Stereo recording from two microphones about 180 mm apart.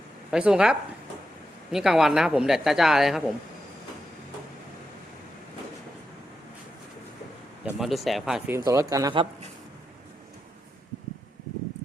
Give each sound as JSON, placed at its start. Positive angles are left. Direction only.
{"t": 0.3, "sound": "speech", "side_deg": -5}
{"t": 7.8, "sound": "speech", "side_deg": 0}
{"t": 8.4, "sound": "speech", "side_deg": -15}